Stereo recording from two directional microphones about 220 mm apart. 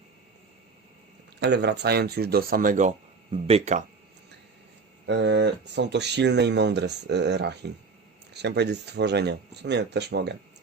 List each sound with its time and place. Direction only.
1.4 s speech: 50° right (ahead or behind); by 3.8 s 30° right (ahead or behind)
5.0 s speech: 50° right (ahead or behind)